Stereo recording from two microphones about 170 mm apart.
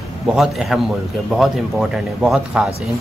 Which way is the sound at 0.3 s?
Centre (ahead or behind).